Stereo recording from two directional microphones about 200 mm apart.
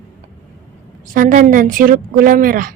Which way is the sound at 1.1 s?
40° right (ahead or behind).